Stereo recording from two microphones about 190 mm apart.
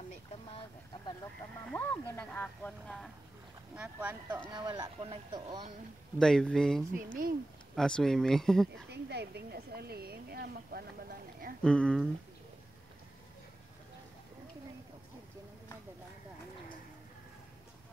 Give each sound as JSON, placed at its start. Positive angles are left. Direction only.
{"t": 0.1, "sound": "a sound", "side_deg": 30}
{"t": 1.7, "sound": "speech", "side_deg": 10}
{"t": 3.7, "sound": "speech", "side_deg": -10}
{"t": 4.5, "sound": "speech", "side_deg": -20}
{"t": 6.1, "sound": "speech", "side_deg": 5}
{"t": 8.9, "sound": "speech", "side_deg": -60}
{"t": 11.6, "sound": "speech", "side_deg": 5}